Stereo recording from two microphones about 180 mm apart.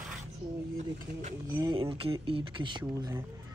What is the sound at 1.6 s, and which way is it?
Speech, 30° right (ahead or behind).